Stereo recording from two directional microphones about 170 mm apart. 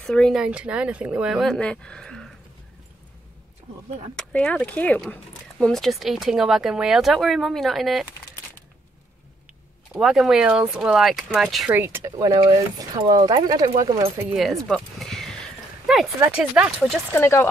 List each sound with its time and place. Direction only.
0.0 s speech: 5° left (ahead or behind)
4.1 s speech: 5° left (ahead or behind)
9.9 s speech: 5° right (ahead or behind); by 14.0 s 20° right (ahead or behind)
14.3 s speech: centre (ahead or behind)
14.7 s a sound: centre (ahead or behind)
16.2 s speech: 5° right (ahead or behind)
17.1 s speech: 15° left (ahead or behind)